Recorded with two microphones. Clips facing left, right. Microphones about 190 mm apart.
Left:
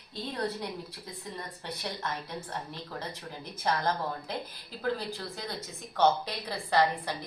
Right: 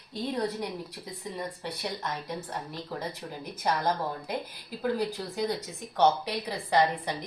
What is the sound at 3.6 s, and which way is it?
Speech, 10° right (ahead or behind).